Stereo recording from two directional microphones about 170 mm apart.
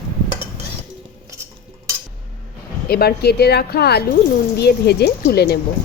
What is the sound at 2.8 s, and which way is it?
Speech, 65° left (ahead or behind).